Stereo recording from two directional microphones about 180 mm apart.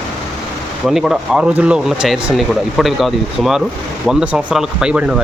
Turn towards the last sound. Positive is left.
turn(degrees=-5)  # may be behind; listen again after turning